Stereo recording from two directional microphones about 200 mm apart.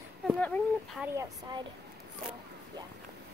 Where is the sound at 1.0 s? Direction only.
20° right (ahead or behind).